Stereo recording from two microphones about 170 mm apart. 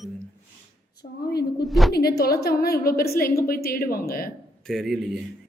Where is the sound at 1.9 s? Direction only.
65° left (ahead or behind).